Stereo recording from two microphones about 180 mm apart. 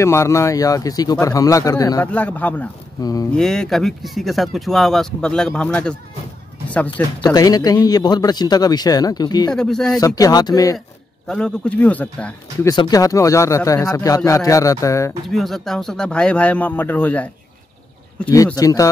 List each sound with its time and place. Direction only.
0.0 s a man's voice: 15° left (ahead or behind)
3.0 s a man's voice: 20° left (ahead or behind)
3.3 s speech: 5° left (ahead or behind)
6.9 s a man's voice: 25° left (ahead or behind)
9.5 s speech: 5° left (ahead or behind)
9.9 s a man's voice: 20° left (ahead or behind)
11.2 s a man's voice: 5° left (ahead or behind)
12.6 s a man's voice: 20° left (ahead or behind)
15.2 s speech: centre (ahead or behind)
18.3 s a man's voice: 20° left (ahead or behind)